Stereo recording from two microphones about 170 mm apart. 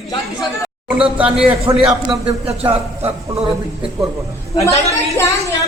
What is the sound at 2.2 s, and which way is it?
Speech, 35° right (ahead or behind).